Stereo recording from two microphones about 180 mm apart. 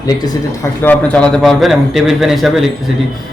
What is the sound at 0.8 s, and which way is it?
A man's voice, 5° left (ahead or behind).